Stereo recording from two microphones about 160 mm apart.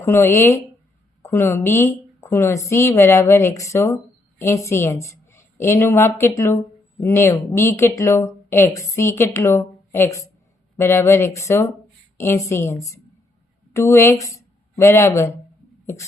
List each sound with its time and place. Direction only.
0.0 s a woman's voice: 15° left (ahead or behind)